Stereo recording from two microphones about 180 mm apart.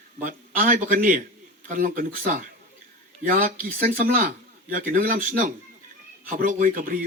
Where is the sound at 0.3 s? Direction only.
50° right (ahead or behind).